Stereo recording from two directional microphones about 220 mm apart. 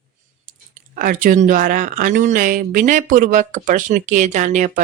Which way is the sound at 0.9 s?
40° right (ahead or behind).